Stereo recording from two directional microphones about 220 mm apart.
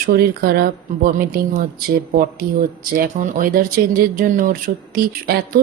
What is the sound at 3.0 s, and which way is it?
Speech, 35° right (ahead or behind).